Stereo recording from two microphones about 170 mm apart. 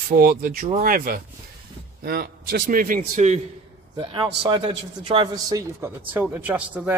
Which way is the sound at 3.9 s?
30° right (ahead or behind).